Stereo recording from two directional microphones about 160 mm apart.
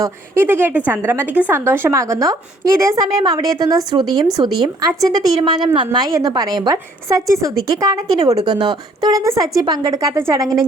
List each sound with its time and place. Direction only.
0.0 s a woman's voice: 15° right (ahead or behind)